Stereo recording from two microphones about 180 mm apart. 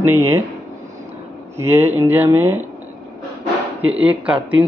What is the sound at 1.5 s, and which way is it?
Speech, 15° right (ahead or behind).